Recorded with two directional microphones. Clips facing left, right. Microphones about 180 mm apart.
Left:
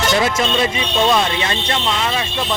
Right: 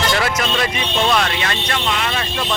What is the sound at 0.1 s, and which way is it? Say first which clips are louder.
Speech: left 3 dB; 20° left (ahead or behind).